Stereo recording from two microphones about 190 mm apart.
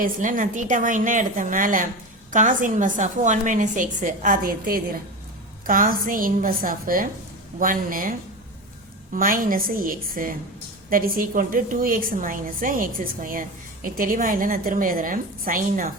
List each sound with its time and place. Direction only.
0.0 s a woman's voice: 45° right (ahead or behind)
9.1 s a woman's voice: 45° right (ahead or behind)